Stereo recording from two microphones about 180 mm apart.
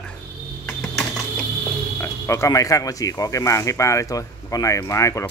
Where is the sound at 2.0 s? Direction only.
15° left (ahead or behind).